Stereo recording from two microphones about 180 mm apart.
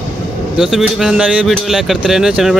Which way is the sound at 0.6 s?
Centre (ahead or behind).